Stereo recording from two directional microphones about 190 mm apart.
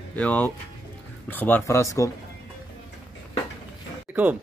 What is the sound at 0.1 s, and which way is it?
Speech, 10° left (ahead or behind).